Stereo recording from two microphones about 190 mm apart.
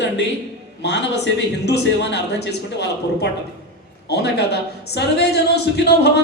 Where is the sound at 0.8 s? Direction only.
65° left (ahead or behind).